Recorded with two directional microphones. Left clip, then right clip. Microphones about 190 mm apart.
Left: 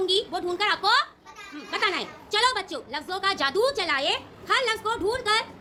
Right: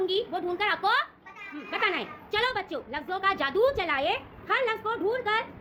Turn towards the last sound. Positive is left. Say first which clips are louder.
# left 3 dB
turn(degrees=-5)  # may be behind; listen again after turning